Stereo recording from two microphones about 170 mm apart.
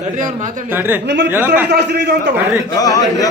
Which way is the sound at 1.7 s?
75° right (ahead or behind).